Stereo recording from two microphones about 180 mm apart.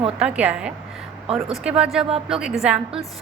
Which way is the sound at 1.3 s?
35° right (ahead or behind).